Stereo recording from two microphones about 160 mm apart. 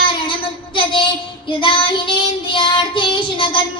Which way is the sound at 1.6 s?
30° left (ahead or behind).